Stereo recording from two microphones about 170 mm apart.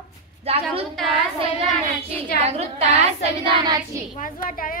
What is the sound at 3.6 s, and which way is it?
Speech, 20° right (ahead or behind).